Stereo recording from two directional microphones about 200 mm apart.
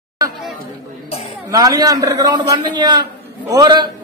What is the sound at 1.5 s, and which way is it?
A man's voice, 20° right (ahead or behind).